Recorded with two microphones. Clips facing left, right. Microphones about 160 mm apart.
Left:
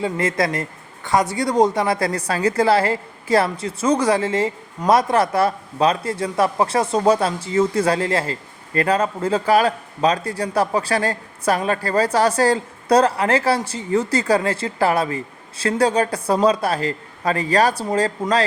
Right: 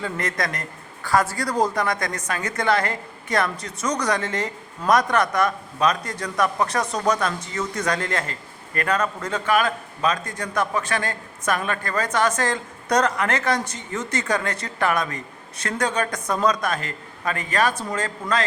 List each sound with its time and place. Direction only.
0.0 s a woman's voice: 25° left (ahead or behind)